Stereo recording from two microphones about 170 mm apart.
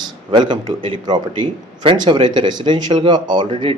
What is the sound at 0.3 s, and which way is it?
Speech, 30° right (ahead or behind).